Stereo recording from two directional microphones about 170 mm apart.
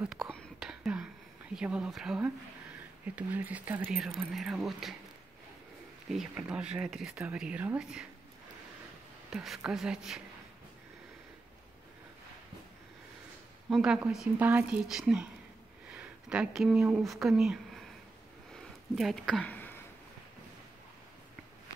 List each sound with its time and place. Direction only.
0.0 s whispering: centre (ahead or behind)
3.2 s speech: 10° right (ahead or behind)
6.3 s speech: 5° right (ahead or behind)
9.3 s speech: centre (ahead or behind)
13.7 s speech: 5° right (ahead or behind)
15.9 s a sound: 5° right (ahead or behind)
16.9 s speech: centre (ahead or behind)
18.5 s a sound: centre (ahead or behind)